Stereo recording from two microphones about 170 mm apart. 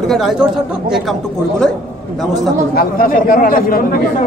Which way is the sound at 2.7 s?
55° left (ahead or behind).